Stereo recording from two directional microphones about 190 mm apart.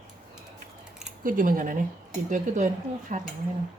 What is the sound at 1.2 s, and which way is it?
Speech, 45° right (ahead or behind).